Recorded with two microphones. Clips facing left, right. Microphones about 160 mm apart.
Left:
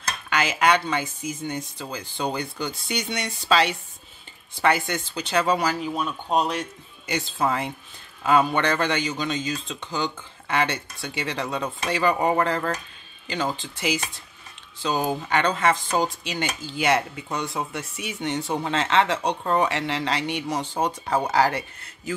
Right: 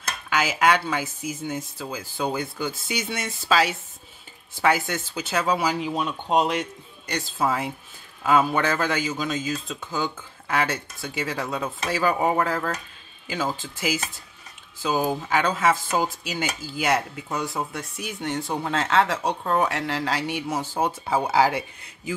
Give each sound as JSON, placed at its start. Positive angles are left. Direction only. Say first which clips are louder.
{"t": 0.3, "sound": "speech", "louder": "even", "side_deg": -5}
{"t": 5.7, "sound": "speech", "louder": "right 1 dB", "side_deg": -15}
{"t": 7.1, "sound": "speech", "louder": "even", "side_deg": 0}